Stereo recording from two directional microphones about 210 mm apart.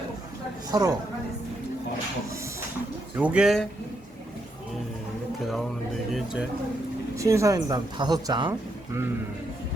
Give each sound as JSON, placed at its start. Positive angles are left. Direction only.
{"t": 0.7, "sound": "speech", "side_deg": -20}
{"t": 3.2, "sound": "speech", "side_deg": -5}
{"t": 7.2, "sound": "speech", "side_deg": -15}